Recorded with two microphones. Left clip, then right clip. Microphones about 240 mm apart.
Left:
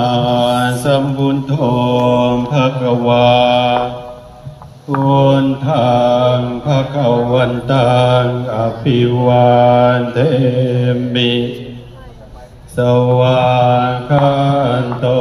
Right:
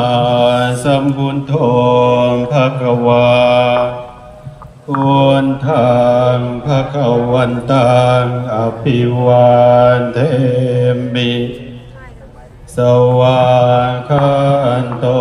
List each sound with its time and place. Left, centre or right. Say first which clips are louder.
0.0 s mantra: right 2 dB; right
5.0 s mantra: right 1 dB; right
12.7 s mantra: right 2 dB; right